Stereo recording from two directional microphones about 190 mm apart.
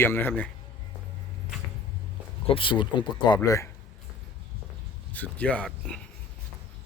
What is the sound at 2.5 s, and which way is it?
Speech, 25° left (ahead or behind).